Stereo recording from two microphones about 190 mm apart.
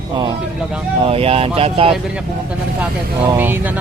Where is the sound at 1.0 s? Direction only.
30° right (ahead or behind).